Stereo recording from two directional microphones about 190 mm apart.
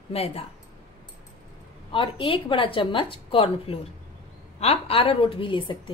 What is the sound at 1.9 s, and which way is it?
A woman's voice, 25° left (ahead or behind).